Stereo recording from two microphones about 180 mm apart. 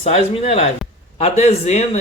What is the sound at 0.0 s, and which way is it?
Speech, 35° left (ahead or behind).